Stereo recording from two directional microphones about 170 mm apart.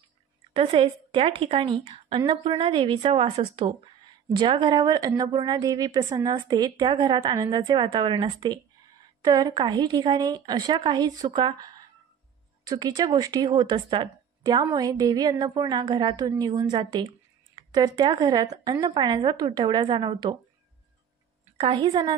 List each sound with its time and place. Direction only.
0.5 s speech: 35° right (ahead or behind)
21.5 s speech: 30° right (ahead or behind)